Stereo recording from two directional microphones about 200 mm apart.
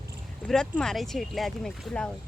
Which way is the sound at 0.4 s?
5° left (ahead or behind).